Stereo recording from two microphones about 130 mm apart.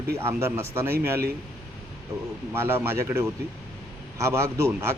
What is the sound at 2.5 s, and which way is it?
Speech, 20° right (ahead or behind).